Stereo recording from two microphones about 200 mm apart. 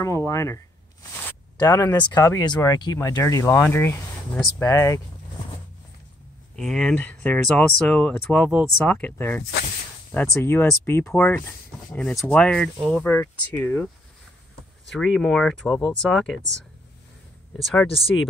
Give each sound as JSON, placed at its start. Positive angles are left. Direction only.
{"t": 0.0, "sound": "speech", "side_deg": 15}
{"t": 1.1, "sound": "a sound", "side_deg": 10}
{"t": 2.0, "sound": "speech", "side_deg": 20}
{"t": 6.5, "sound": "speech", "side_deg": 5}
{"t": 14.9, "sound": "speech", "side_deg": 0}
{"t": 17.6, "sound": "speech", "side_deg": 0}